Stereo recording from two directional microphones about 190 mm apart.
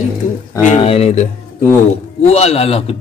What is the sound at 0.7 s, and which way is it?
Speech, 30° left (ahead or behind).